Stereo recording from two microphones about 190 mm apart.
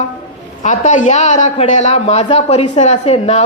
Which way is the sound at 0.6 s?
40° left (ahead or behind).